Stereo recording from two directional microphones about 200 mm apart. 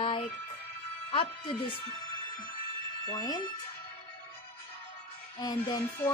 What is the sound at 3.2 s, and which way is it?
Speech, 20° left (ahead or behind).